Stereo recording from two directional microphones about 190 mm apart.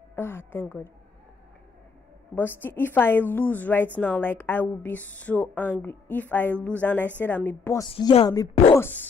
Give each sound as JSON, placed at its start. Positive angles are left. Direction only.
{"t": 0.1, "sound": "a woman's voice", "side_deg": 10}
{"t": 2.3, "sound": "a woman's voice", "side_deg": 10}
{"t": 7.9, "sound": "speech", "side_deg": 30}